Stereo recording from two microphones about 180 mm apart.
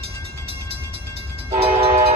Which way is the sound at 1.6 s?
35° right (ahead or behind).